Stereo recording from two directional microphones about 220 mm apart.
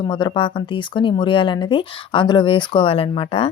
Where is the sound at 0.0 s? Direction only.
20° left (ahead or behind).